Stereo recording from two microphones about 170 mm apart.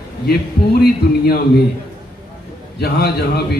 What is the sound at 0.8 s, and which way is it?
Speech, 65° left (ahead or behind).